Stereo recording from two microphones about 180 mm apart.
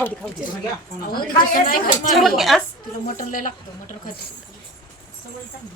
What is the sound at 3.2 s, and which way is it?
Speech, 50° left (ahead or behind).